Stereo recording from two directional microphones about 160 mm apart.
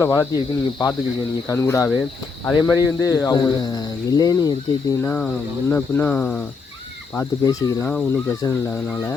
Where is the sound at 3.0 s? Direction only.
20° left (ahead or behind).